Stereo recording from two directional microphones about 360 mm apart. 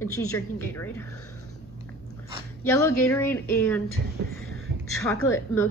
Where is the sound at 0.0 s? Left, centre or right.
Left.